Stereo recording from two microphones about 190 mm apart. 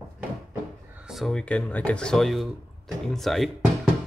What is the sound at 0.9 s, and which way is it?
Speech, 5° right (ahead or behind).